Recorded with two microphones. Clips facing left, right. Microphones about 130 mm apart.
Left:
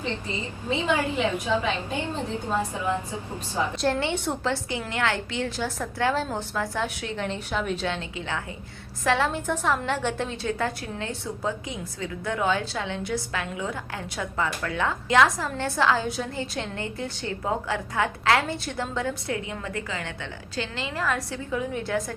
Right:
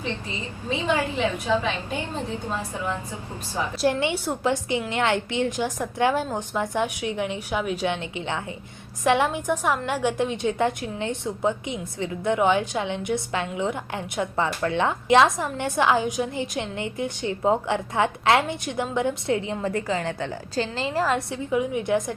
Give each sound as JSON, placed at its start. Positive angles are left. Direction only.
{"t": 0.0, "sound": "a woman's voice", "side_deg": -15}
{"t": 1.1, "sound": "a woman's voice", "side_deg": 10}
{"t": 1.7, "sound": "a woman's voice", "side_deg": -10}
{"t": 2.5, "sound": "a woman's voice", "side_deg": 10}
{"t": 3.5, "sound": "a woman's voice", "side_deg": -10}